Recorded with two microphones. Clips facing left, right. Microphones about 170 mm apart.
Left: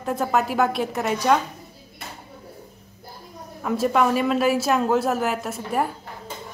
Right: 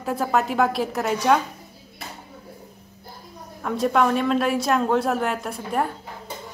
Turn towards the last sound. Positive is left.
turn(degrees=5)  # may be behind; listen again after turning